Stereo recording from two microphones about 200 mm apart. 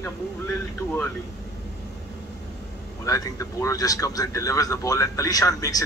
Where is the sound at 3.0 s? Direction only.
15° left (ahead or behind).